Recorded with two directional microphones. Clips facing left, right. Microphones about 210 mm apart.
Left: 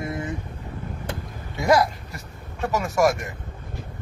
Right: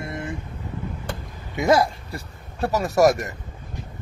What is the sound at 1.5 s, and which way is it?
Speech, 25° right (ahead or behind).